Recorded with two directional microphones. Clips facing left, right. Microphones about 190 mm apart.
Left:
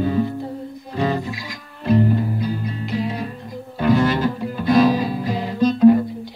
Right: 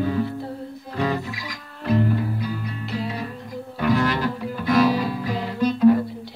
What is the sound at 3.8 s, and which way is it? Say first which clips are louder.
Music: left 4 dB; 25° left (ahead or behind).